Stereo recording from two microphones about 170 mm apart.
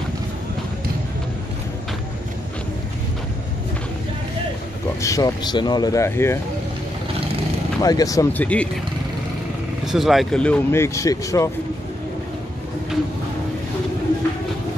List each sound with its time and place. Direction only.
5.0 s speech: 20° left (ahead or behind)
7.8 s speech: 20° left (ahead or behind)
9.8 s speech: centre (ahead or behind); by 11.5 s 20° left (ahead or behind)